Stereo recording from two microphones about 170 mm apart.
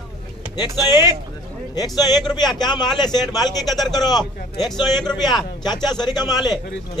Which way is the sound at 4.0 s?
25° left (ahead or behind).